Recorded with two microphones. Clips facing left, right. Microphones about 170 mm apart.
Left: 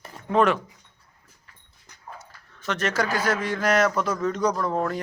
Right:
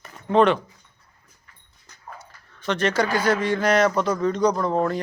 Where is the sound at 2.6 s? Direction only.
Centre (ahead or behind).